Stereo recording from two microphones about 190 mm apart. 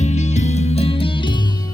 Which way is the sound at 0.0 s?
35° left (ahead or behind).